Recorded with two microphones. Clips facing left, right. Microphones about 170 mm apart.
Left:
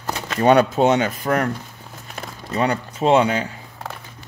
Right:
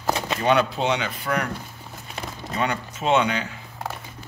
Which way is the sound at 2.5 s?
35° left (ahead or behind).